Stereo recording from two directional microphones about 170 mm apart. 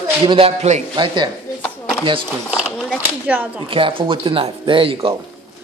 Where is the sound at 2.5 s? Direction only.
5° right (ahead or behind).